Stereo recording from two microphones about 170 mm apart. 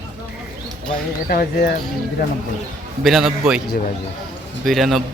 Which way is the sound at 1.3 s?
60° left (ahead or behind).